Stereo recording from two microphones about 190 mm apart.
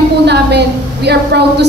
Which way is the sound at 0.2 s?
60° right (ahead or behind).